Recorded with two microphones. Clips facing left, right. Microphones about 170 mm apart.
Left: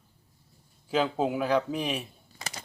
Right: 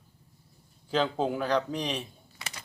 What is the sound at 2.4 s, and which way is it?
Power windows, 35° left (ahead or behind).